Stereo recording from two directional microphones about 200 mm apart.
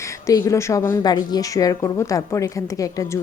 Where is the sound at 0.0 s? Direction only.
15° left (ahead or behind).